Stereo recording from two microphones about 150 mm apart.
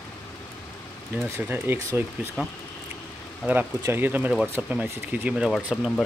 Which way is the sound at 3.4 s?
15° right (ahead or behind).